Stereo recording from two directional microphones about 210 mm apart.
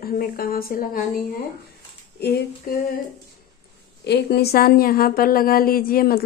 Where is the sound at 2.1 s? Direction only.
50° left (ahead or behind).